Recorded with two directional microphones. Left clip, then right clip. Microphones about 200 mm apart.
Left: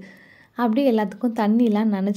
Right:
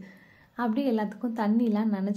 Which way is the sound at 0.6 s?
40° left (ahead or behind).